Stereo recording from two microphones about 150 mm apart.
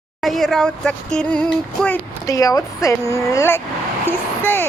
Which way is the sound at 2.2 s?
25° left (ahead or behind).